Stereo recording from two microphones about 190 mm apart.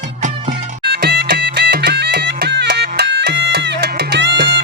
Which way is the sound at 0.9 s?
60° right (ahead or behind).